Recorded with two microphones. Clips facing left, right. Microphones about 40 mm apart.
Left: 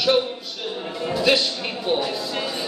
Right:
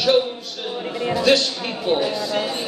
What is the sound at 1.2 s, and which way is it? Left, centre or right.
Speech, centre.